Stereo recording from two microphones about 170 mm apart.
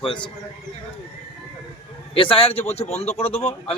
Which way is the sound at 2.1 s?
30° left (ahead or behind).